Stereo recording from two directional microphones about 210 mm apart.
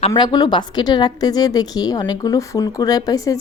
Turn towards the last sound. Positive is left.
turn(degrees=15)  # may be behind; listen again after turning